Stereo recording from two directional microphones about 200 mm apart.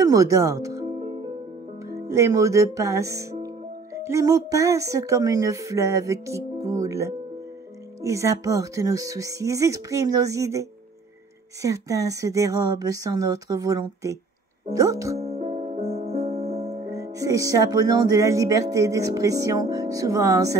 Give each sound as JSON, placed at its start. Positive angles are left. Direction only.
{"t": 0.0, "sound": "speech", "side_deg": -15}
{"t": 0.8, "sound": "music", "side_deg": -30}
{"t": 2.0, "sound": "music", "side_deg": -15}
{"t": 3.4, "sound": "speech", "side_deg": -15}
{"t": 8.0, "sound": "music", "side_deg": -15}
{"t": 15.1, "sound": "music", "side_deg": -30}
{"t": 16.8, "sound": "music", "side_deg": -15}